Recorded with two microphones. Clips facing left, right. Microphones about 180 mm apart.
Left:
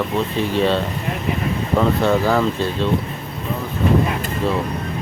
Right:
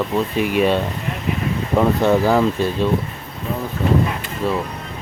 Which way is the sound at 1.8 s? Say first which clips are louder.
Right 2 dB; 15° right (ahead or behind).